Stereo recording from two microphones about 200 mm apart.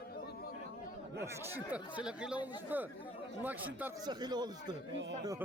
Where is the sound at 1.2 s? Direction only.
5° right (ahead or behind).